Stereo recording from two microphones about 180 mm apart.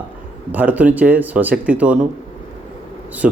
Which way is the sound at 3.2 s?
5° right (ahead or behind).